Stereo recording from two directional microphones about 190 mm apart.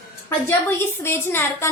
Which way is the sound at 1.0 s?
10° left (ahead or behind).